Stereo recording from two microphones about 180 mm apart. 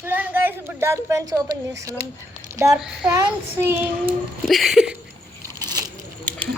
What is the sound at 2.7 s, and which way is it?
A woman's voice, 5° right (ahead or behind).